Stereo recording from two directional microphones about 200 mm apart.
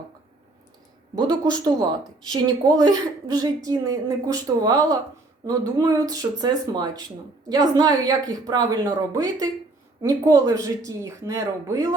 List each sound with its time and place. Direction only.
1.1 s a woman's voice: 20° right (ahead or behind)